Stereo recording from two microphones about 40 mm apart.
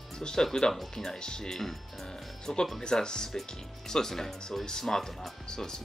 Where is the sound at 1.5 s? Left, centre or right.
Centre.